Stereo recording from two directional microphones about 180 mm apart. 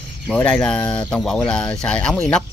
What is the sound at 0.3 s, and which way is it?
Speech, 5° left (ahead or behind).